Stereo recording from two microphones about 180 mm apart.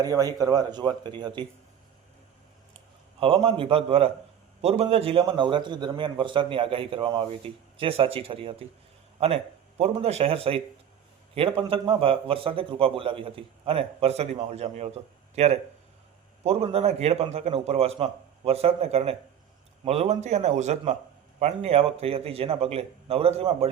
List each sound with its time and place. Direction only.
0.0 s a man's voice: 20° right (ahead or behind)
3.2 s a man's voice: 30° right (ahead or behind)